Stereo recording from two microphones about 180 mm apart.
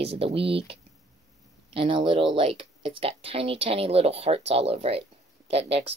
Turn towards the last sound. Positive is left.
turn(degrees=-35)  # may be behind; listen again after turning